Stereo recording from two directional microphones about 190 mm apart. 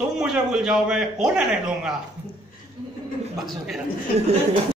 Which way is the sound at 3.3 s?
Centre (ahead or behind).